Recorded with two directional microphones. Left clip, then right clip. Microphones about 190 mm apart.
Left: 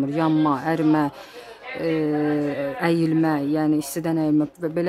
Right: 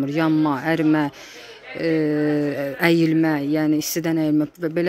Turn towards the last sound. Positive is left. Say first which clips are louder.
# right 1 dB
turn(degrees=-5)  # may be behind; listen again after turning